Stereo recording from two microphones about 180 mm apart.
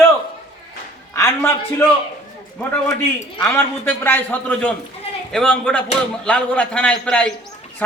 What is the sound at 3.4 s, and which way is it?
A man's voice, 10° left (ahead or behind).